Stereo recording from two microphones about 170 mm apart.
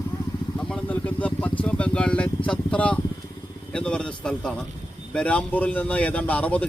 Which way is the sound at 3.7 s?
5° left (ahead or behind).